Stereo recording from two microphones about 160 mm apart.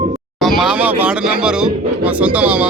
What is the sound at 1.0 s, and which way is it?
Speech, 5° right (ahead or behind).